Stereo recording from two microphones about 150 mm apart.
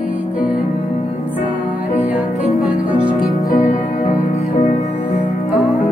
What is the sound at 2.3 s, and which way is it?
Music, centre (ahead or behind).